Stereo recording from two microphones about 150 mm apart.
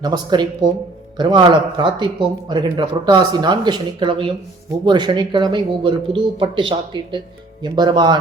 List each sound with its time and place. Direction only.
0.0 s speech: 30° right (ahead or behind)